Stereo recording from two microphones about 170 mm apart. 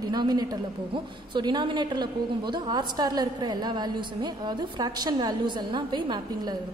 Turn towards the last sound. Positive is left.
turn(degrees=-25)  # may be behind; listen again after turning